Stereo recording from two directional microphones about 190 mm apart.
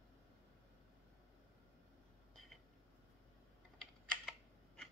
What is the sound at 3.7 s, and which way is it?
Typing, 5° left (ahead or behind).